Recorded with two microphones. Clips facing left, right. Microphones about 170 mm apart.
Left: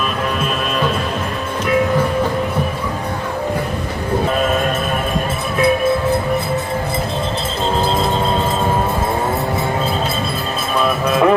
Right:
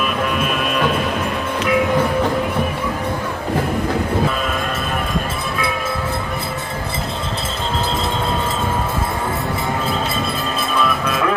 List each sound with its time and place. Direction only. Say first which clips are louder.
11.0 s music: left 6 dB; 30° left (ahead or behind)